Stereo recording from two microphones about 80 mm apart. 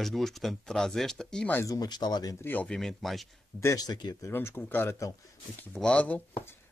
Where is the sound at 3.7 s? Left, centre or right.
Left.